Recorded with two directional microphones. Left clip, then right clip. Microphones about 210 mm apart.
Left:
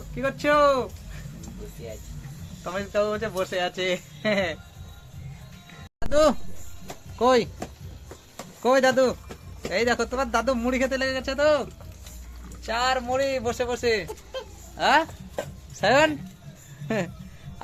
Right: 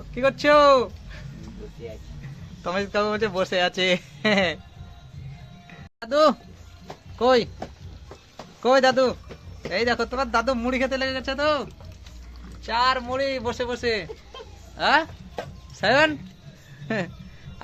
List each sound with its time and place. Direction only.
0.1 s speech: 40° right (ahead or behind)
2.6 s speech: 45° right (ahead or behind)
6.0 s speech: 5° left (ahead or behind)
8.6 s speech: centre (ahead or behind)